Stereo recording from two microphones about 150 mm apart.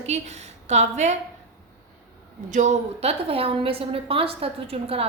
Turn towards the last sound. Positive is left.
turn(degrees=-40)  # may be behind; listen again after turning